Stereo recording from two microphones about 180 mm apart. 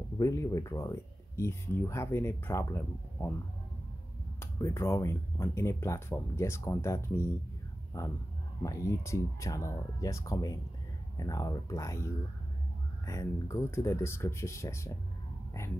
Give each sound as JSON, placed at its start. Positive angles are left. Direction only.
{"t": 0.2, "sound": "speech", "side_deg": 20}
{"t": 4.4, "sound": "speech", "side_deg": 15}